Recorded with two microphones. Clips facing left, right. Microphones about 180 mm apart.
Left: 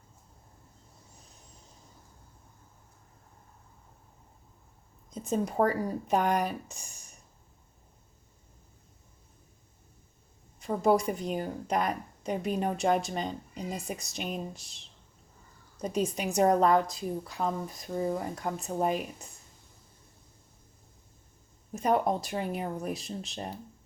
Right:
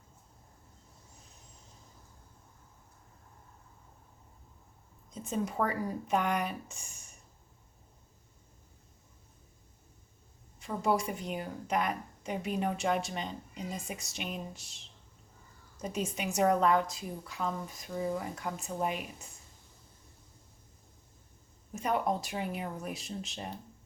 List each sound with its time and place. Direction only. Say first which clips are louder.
5.1 s a woman's voice: left 5 dB; 40° left (ahead or behind)
10.6 s a woman's voice: left 5 dB; 35° left (ahead or behind)
15.8 s a woman's voice: left 5 dB; 35° left (ahead or behind)
21.7 s a woman's voice: left 4 dB; 35° left (ahead or behind)